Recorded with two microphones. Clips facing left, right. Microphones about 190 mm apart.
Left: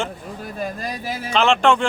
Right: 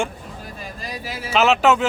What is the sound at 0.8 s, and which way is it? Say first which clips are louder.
Speech: left 4 dB; 50° left (ahead or behind).